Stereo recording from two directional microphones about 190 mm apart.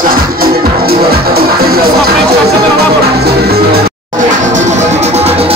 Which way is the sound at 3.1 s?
55° right (ahead or behind).